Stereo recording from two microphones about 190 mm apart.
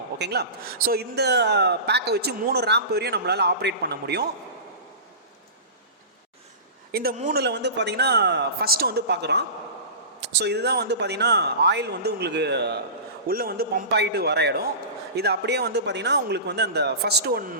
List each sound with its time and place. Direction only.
0.2 s a man's voice: 60° right (ahead or behind)
6.9 s a man's voice: 55° right (ahead or behind)
7.3 s a man's voice: 65° right (ahead or behind)